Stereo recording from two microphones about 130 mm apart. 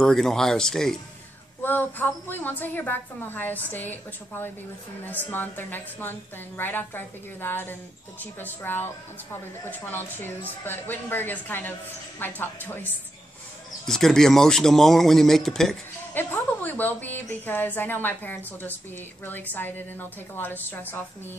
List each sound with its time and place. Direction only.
0.0 s speech: 5° left (ahead or behind)
1.6 s a woman's voice: 15° left (ahead or behind)
13.8 s speech: 5° left (ahead or behind)
16.1 s a woman's voice: 15° left (ahead or behind)